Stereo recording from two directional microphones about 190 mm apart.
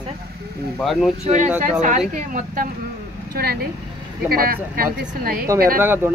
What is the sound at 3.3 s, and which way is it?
Speech, 55° right (ahead or behind).